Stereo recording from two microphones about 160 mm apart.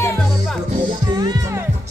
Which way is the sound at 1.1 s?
25° right (ahead or behind).